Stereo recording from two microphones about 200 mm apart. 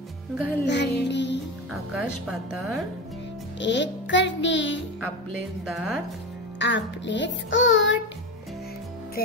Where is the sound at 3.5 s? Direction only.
65° left (ahead or behind).